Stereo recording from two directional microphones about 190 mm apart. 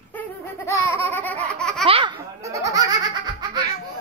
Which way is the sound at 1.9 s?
30° right (ahead or behind).